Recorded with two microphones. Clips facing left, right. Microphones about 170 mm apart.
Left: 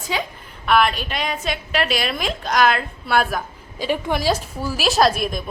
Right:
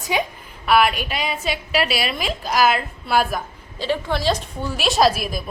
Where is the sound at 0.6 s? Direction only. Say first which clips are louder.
Right 1 dB; 5° right (ahead or behind).